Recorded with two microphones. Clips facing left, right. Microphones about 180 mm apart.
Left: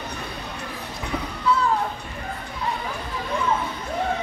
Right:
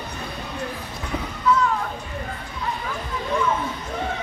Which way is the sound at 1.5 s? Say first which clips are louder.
Right 2 dB; 30° left (ahead or behind).